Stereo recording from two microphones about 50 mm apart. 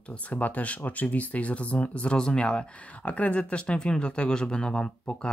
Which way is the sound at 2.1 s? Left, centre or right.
Centre.